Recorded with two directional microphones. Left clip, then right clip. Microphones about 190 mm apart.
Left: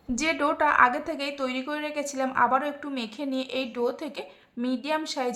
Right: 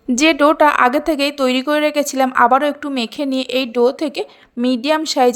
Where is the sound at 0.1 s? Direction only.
40° right (ahead or behind).